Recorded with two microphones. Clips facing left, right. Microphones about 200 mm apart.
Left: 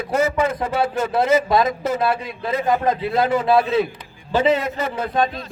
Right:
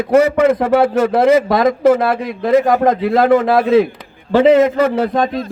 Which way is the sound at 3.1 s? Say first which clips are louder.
Right 4 dB; 60° right (ahead or behind).